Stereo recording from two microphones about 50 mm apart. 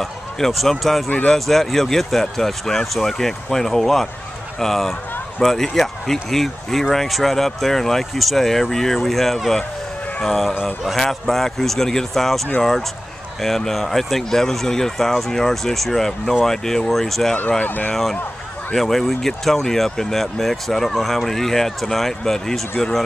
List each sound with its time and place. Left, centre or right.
0.0 s speech: centre
10.5 s speech: centre
11.0 s speech: centre
17.6 s speech: left
18.8 s speech: centre